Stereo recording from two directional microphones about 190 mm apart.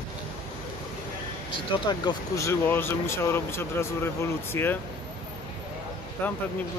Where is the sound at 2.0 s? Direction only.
20° left (ahead or behind).